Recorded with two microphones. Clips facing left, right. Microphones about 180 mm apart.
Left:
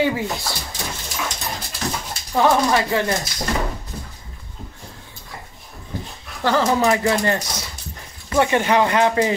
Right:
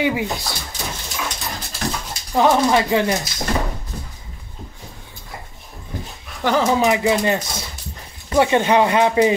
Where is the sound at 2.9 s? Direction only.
15° right (ahead or behind).